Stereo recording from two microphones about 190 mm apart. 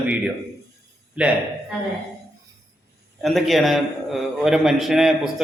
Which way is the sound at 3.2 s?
Centre (ahead or behind).